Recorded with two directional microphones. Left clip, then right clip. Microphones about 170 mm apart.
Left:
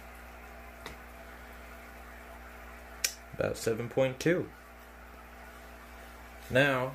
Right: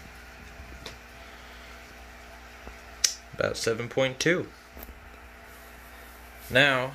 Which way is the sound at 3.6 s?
Centre (ahead or behind).